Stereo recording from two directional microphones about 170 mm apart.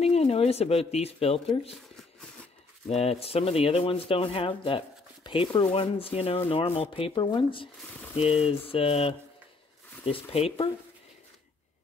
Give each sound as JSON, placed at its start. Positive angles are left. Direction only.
{"t": 0.0, "sound": "speech", "side_deg": 35}
{"t": 2.9, "sound": "speech", "side_deg": 35}